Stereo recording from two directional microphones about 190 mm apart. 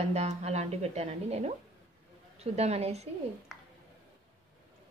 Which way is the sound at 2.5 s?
35° right (ahead or behind).